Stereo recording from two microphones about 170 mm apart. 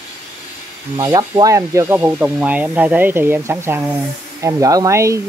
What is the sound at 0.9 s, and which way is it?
Speech, 20° right (ahead or behind).